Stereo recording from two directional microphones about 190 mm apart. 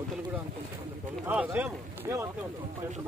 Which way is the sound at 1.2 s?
10° right (ahead or behind).